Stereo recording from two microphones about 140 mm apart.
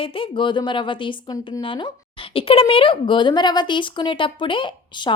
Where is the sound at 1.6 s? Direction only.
35° left (ahead or behind).